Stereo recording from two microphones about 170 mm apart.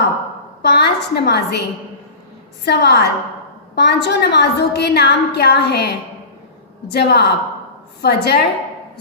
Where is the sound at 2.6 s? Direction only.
75° left (ahead or behind).